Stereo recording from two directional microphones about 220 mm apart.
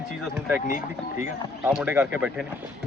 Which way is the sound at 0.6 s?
35° left (ahead or behind).